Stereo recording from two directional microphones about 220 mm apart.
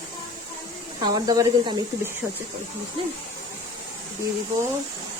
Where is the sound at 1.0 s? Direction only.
20° right (ahead or behind).